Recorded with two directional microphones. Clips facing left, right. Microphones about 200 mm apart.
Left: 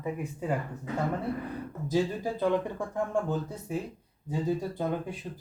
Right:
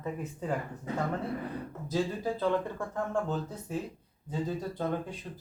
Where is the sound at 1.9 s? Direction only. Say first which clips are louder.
Left 3 dB; 15° left (ahead or behind).